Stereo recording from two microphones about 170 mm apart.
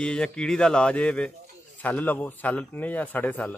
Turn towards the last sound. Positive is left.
turn(degrees=10)  # may be behind; listen again after turning